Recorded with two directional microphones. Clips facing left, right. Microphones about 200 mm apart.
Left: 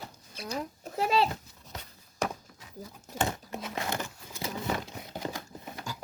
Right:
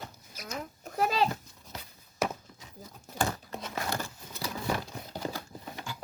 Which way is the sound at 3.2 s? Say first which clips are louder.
Even; 20° left (ahead or behind).